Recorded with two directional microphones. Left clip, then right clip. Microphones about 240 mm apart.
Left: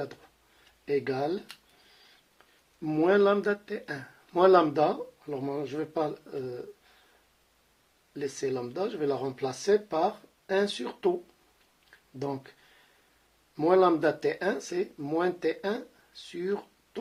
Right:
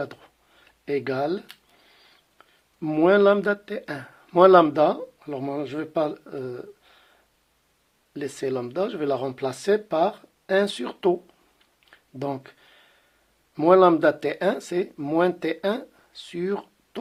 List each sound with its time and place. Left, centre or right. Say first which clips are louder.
0.0 s speech: right 5 dB; right
8.1 s speech: right 4 dB; right
12.2 s speech: right 5 dB; right
13.6 s speech: right 7 dB; right